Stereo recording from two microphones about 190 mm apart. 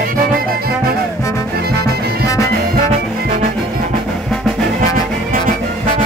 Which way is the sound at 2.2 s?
15° left (ahead or behind).